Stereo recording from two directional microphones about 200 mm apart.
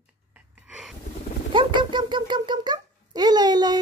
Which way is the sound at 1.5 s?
25° right (ahead or behind).